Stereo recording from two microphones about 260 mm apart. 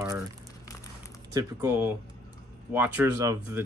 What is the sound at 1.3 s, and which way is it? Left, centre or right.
Speech, centre.